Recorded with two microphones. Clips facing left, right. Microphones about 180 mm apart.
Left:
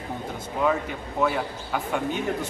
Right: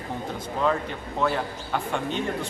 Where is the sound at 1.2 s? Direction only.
5° left (ahead or behind).